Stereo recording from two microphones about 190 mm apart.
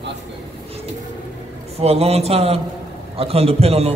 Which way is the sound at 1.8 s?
30° right (ahead or behind).